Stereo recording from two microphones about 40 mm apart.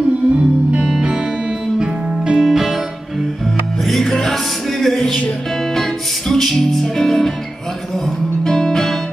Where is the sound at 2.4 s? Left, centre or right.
Centre.